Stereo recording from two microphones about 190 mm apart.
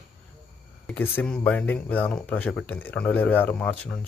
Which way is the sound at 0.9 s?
10° left (ahead or behind).